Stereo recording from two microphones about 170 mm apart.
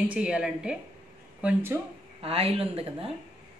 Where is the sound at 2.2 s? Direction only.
35° right (ahead or behind).